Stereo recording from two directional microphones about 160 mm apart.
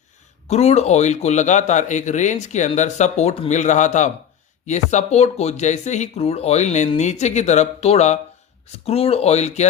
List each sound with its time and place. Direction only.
0.4 s a man's voice: 45° left (ahead or behind)